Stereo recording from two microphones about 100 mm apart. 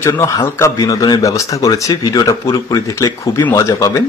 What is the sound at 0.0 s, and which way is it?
Speech, 30° left (ahead or behind).